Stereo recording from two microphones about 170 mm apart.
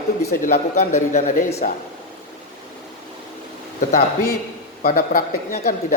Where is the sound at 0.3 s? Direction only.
45° left (ahead or behind).